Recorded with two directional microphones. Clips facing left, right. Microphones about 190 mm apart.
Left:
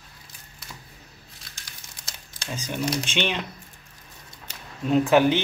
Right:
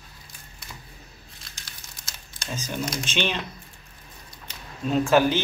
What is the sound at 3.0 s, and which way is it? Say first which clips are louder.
Speech: even; 15° left (ahead or behind).